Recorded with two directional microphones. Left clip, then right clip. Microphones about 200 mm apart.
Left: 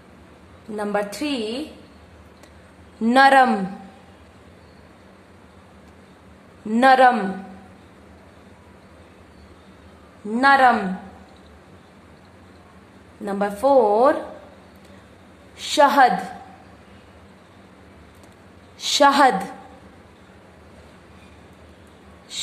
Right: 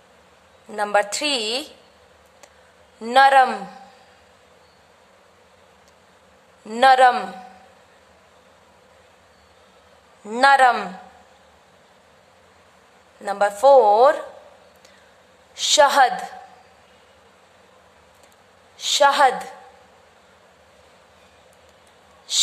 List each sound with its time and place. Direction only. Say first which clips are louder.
0.7 s a woman's voice: right 4 dB; 20° right (ahead or behind)
3.0 s a woman's voice: even; 15° right (ahead or behind)
6.7 s a woman's voice: even; 20° right (ahead or behind)
10.3 s a woman's voice: right 1 dB; 20° right (ahead or behind)
13.2 s a woman's voice: right 4 dB; 15° right (ahead or behind)
15.5 s a woman's voice: right 1 dB; 20° right (ahead or behind)
18.8 s a woman's voice: left 1 dB; 10° right (ahead or behind)